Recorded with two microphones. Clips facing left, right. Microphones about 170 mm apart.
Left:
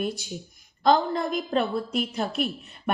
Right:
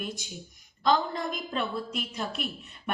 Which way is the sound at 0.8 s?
45° left (ahead or behind).